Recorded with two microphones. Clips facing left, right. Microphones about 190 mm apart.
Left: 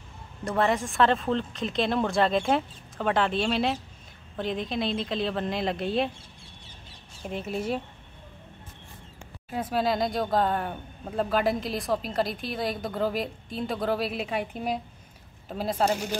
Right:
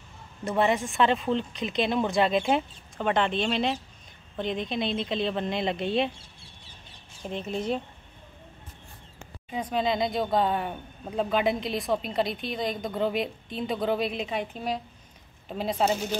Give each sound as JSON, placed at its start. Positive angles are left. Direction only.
{"t": 0.5, "sound": "speech", "side_deg": 0}
{"t": 7.2, "sound": "speech", "side_deg": 5}
{"t": 9.5, "sound": "speech", "side_deg": 5}